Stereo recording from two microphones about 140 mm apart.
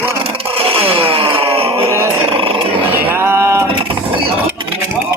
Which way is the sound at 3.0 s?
15° right (ahead or behind).